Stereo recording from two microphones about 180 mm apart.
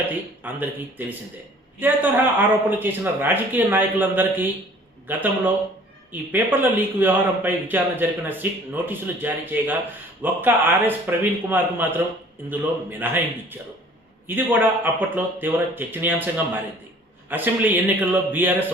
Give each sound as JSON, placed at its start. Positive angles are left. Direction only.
{"t": 0.4, "sound": "a man's voice", "side_deg": -10}
{"t": 14.3, "sound": "a man's voice", "side_deg": -10}